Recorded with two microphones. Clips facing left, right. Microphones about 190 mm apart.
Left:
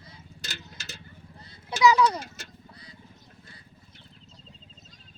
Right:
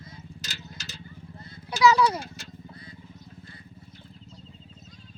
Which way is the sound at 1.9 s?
5° right (ahead or behind).